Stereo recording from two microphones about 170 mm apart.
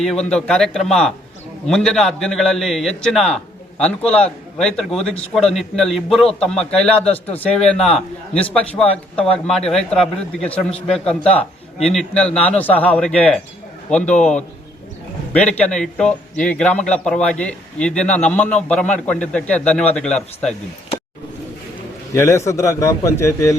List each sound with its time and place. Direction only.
0.0 s a man's voice: 5° left (ahead or behind)
22.1 s a man's voice: 15° left (ahead or behind)